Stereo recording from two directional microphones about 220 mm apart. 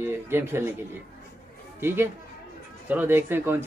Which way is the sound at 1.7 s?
10° right (ahead or behind).